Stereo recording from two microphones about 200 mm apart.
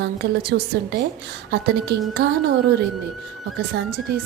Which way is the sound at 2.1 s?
55° right (ahead or behind).